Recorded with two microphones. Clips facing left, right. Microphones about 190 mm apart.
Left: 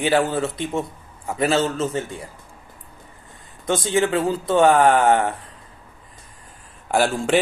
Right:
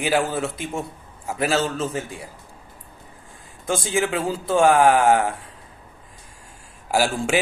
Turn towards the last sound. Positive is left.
turn(degrees=-5)  # may be behind; listen again after turning